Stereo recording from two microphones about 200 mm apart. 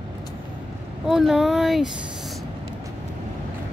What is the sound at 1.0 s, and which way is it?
Speech, centre (ahead or behind).